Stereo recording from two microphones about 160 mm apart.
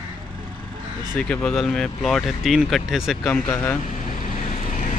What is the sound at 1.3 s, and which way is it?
Speech, 5° left (ahead or behind).